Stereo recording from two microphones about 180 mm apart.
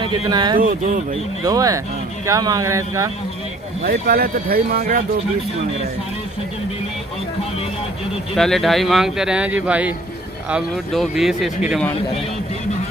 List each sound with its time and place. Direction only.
0.0 s speech: 25° right (ahead or behind)
0.6 s speech: 50° right (ahead or behind)
1.4 s speech: 20° right (ahead or behind)
3.8 s speech: 60° right (ahead or behind)
8.4 s a man's voice: centre (ahead or behind)